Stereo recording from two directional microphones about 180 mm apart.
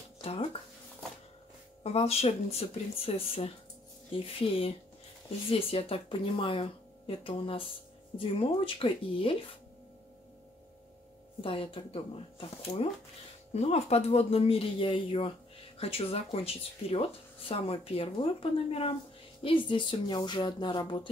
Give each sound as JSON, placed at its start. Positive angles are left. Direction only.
{"t": 0.2, "sound": "a sound", "side_deg": 35}
{"t": 1.8, "sound": "speech", "side_deg": 35}
{"t": 11.4, "sound": "speech", "side_deg": 30}